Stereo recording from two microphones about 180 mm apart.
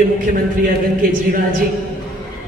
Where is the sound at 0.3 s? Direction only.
50° right (ahead or behind).